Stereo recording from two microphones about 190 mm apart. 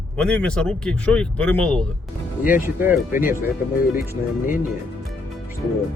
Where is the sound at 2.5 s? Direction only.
10° right (ahead or behind).